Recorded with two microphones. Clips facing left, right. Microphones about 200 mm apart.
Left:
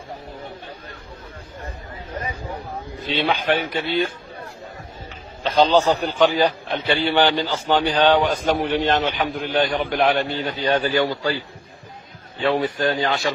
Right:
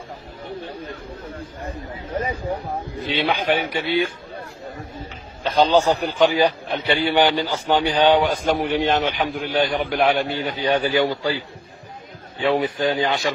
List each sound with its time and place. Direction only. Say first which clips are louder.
3.1 s a man's voice: even; 15° right (ahead or behind)
5.7 s a man's voice: even; 10° right (ahead or behind)